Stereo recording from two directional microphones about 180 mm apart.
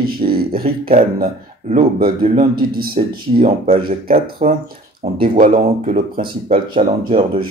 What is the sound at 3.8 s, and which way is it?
Speech, 55° right (ahead or behind).